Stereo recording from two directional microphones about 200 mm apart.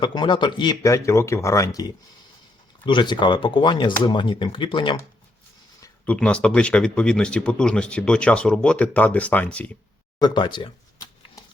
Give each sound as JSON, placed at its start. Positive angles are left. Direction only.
{"t": 0.0, "sound": "speech", "side_deg": 25}
{"t": 5.8, "sound": "speech", "side_deg": 5}
{"t": 10.2, "sound": "speech", "side_deg": 20}